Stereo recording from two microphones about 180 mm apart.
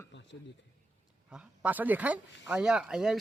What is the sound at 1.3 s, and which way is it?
Speech, 5° right (ahead or behind).